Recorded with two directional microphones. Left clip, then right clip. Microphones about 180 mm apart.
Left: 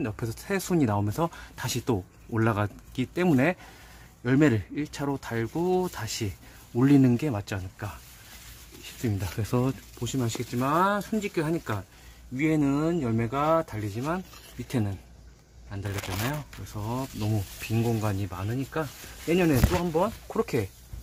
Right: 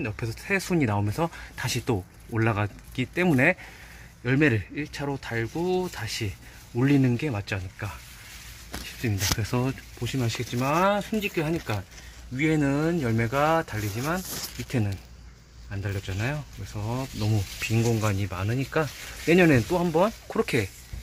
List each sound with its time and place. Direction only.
0.0 s speech: 15° left (ahead or behind)
9.0 s speech: 5° left (ahead or behind)
20.4 s speech: 5° left (ahead or behind)